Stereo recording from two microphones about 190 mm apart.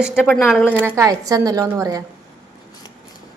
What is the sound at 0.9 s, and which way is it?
A woman's voice, 20° right (ahead or behind).